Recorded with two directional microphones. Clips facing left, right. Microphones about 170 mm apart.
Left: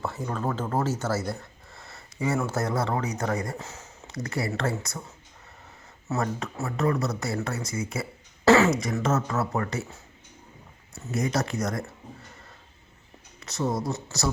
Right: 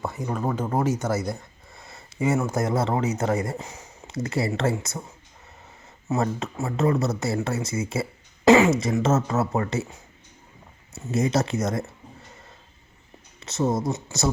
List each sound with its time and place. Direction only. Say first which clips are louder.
0.0 s speech: right 2 dB; 15° right (ahead or behind)
3.6 s a sound: right 2 dB; 15° right (ahead or behind)
4.1 s speech: right 4 dB; 25° right (ahead or behind)
6.1 s speech: right 3 dB; 25° right (ahead or behind)
8.4 s speech: right 3 dB; 15° right (ahead or behind)
13.4 s speech: right 4 dB; 25° right (ahead or behind)